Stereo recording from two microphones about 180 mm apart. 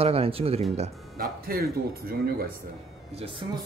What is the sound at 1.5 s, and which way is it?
Speech, 55° right (ahead or behind).